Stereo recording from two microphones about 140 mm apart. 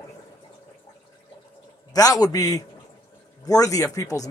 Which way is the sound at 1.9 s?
25° left (ahead or behind).